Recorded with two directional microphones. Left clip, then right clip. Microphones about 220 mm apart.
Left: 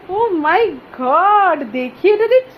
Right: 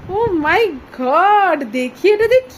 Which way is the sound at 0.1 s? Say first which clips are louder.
Left 1 dB; 20° right (ahead or behind).